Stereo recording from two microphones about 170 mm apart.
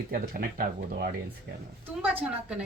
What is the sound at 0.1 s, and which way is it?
Speech, 60° right (ahead or behind).